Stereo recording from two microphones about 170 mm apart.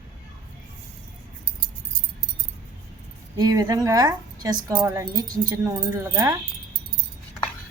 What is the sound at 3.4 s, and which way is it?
A woman's voice, 20° right (ahead or behind).